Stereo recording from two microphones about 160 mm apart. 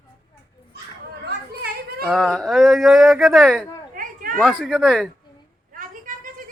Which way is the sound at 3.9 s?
60° right (ahead or behind).